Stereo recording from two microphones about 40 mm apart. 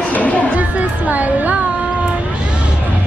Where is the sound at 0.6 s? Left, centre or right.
Right.